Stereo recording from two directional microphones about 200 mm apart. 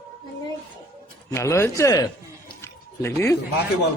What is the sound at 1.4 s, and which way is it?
Speech, 15° left (ahead or behind).